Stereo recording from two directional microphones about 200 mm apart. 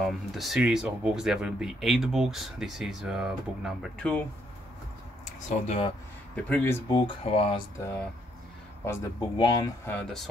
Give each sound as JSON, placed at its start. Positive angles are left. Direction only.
{"t": 0.0, "sound": "speech", "side_deg": 0}
{"t": 5.7, "sound": "speech", "side_deg": 25}
{"t": 6.3, "sound": "speech", "side_deg": 10}
{"t": 7.1, "sound": "speech", "side_deg": 30}
{"t": 8.8, "sound": "speech", "side_deg": 15}